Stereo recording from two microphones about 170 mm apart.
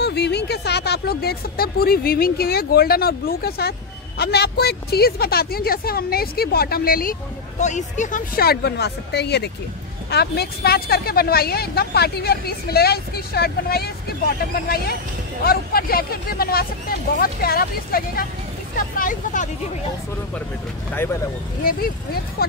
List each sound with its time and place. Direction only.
0.0 s a woman's voice: 80° left
15.4 s a woman's voice: 65° left (ahead or behind)
20.9 s speech: 15° left (ahead or behind)
21.6 s a woman's voice: 60° left (ahead or behind)